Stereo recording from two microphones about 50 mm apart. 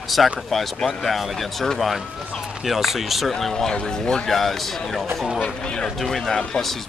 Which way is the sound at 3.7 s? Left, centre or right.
Left.